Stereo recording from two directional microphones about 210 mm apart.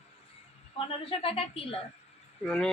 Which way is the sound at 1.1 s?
25° left (ahead or behind).